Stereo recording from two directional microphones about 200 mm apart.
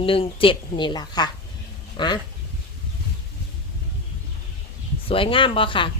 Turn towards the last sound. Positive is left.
turn(degrees=25)  # may be behind; listen again after turning